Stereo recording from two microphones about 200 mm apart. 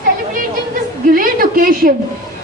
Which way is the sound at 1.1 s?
45° right (ahead or behind).